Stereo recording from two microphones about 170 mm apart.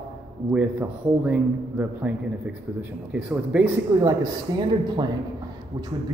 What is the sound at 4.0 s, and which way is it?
Speech, 25° right (ahead or behind).